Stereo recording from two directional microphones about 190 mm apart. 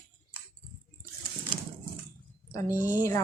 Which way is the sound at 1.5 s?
25° right (ahead or behind).